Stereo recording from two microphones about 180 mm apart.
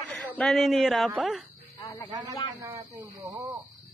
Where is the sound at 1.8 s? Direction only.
15° left (ahead or behind).